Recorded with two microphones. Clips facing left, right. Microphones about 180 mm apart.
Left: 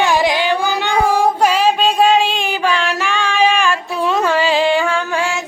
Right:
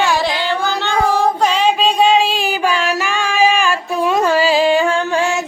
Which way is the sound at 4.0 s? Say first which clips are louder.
Right 2 dB; 10° right (ahead or behind).